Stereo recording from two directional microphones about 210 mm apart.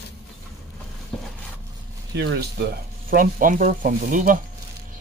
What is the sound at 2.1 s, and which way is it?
Speech, 55° right (ahead or behind).